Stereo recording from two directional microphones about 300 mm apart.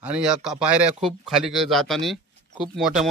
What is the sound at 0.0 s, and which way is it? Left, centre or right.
Speech, centre.